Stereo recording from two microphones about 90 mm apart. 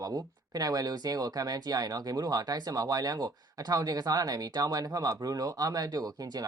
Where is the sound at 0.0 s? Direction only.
40° right (ahead or behind).